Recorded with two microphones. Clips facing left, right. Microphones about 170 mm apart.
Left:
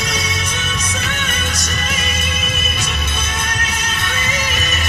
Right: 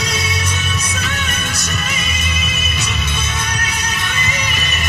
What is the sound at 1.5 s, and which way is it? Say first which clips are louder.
Music: even; 45° left (ahead or behind).